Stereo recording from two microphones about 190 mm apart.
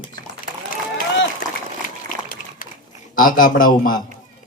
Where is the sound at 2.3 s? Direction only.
45° left (ahead or behind).